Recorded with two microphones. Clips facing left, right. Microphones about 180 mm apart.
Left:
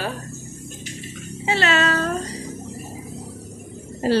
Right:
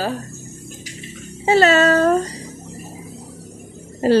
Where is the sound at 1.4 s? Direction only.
40° right (ahead or behind).